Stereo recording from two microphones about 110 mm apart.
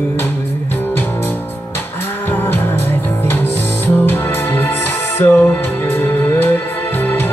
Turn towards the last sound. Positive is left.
turn(degrees=20)  # may be behind; listen again after turning